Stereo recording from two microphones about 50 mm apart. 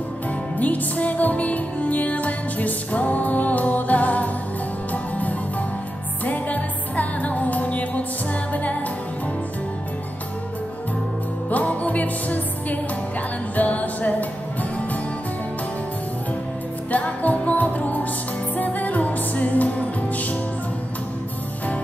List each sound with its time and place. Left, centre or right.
0.6 s music: left
11.5 s music: left
16.9 s music: left